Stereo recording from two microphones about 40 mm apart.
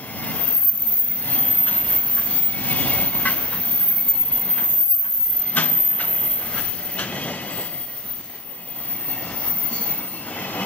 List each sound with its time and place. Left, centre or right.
0.0 s vehicle: left
1.2 s train: left
4.3 s vehicle: left
9.0 s train: left